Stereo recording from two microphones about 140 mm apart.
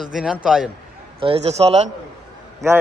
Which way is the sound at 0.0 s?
5° right (ahead or behind).